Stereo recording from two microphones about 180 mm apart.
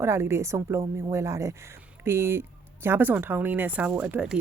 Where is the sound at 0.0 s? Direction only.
15° right (ahead or behind).